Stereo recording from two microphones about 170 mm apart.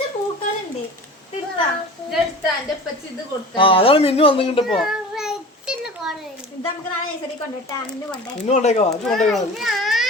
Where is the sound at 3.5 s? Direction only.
30° left (ahead or behind).